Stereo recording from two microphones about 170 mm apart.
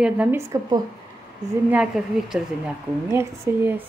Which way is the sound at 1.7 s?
5° right (ahead or behind).